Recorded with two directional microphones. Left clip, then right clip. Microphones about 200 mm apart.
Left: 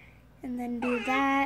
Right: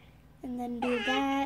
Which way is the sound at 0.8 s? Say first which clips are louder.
Even; centre (ahead or behind).